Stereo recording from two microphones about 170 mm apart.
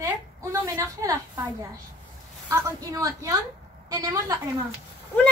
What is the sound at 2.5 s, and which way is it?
A woman's voice, 20° right (ahead or behind).